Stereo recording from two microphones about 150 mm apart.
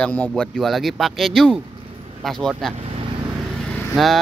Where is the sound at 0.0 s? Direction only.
10° left (ahead or behind).